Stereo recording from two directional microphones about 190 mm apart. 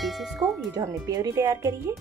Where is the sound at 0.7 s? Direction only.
20° right (ahead or behind).